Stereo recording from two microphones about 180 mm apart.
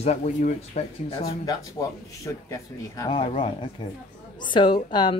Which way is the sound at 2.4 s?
20° left (ahead or behind).